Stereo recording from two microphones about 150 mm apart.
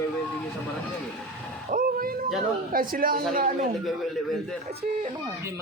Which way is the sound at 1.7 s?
75° right (ahead or behind).